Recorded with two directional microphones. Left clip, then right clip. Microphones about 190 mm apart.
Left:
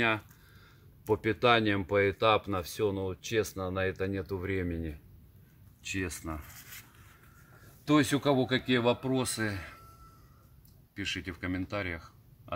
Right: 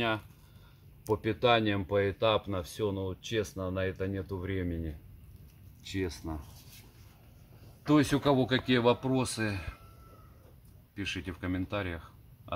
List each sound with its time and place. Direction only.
1.0 s speech: 45° left (ahead or behind)
7.8 s speech: centre (ahead or behind)
11.0 s speech: 5° left (ahead or behind)